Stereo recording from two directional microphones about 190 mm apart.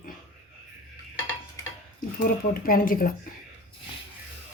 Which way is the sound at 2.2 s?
50° left (ahead or behind).